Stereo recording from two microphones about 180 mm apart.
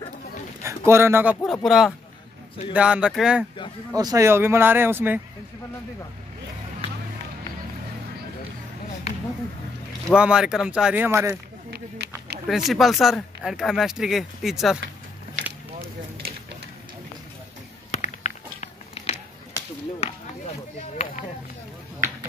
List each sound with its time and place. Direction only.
0.7 s a man's voice: 15° right (ahead or behind)
1.4 s speech: centre (ahead or behind)
3.9 s speech: 20° right (ahead or behind)
10.0 s speech: 5° right (ahead or behind)
12.4 s speech: centre (ahead or behind)
17.9 s a sound: 40° left (ahead or behind)